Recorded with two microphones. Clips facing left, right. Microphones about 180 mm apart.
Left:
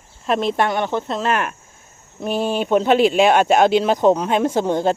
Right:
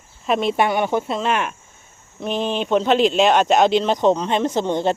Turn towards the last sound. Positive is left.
turn(degrees=5)  # may be behind; listen again after turning